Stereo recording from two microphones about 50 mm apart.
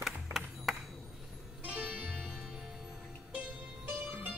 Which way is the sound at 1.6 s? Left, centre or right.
Right.